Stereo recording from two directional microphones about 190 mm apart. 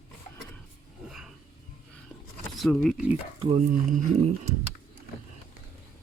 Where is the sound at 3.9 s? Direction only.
40° right (ahead or behind).